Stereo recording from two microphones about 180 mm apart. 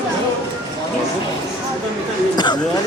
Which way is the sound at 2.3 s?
25° left (ahead or behind).